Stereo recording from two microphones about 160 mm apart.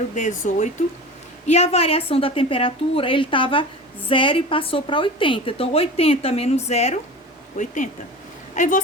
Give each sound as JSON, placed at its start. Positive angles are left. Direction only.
{"t": 0.1, "sound": "a woman's voice", "side_deg": 50}